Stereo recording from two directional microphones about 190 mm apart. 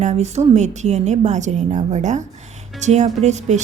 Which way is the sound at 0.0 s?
35° right (ahead or behind).